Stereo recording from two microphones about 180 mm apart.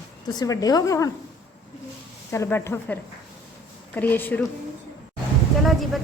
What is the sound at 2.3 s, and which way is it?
A woman's voice, 15° left (ahead or behind).